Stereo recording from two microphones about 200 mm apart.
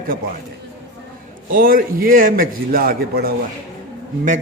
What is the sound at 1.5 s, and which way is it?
A man's voice, 45° right (ahead or behind).